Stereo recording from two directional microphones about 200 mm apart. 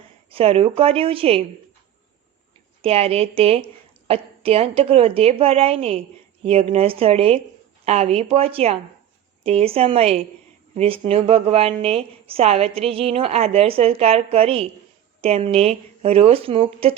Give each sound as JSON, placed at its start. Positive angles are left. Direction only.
{"t": 0.3, "sound": "speech", "side_deg": -30}
{"t": 2.8, "sound": "a woman's voice", "side_deg": -30}